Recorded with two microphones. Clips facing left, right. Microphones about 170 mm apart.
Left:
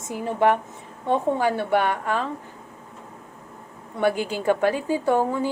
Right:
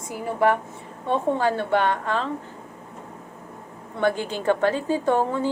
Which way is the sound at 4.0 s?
10° left (ahead or behind).